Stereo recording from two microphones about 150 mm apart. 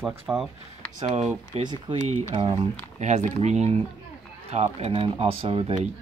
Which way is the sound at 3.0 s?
50° right (ahead or behind).